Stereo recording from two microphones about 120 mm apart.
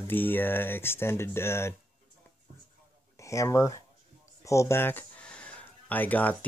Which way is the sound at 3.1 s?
25° left (ahead or behind).